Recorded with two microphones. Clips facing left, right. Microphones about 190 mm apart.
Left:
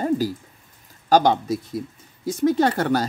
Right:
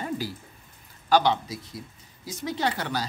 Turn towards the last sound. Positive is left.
turn(degrees=50)  # may be behind; listen again after turning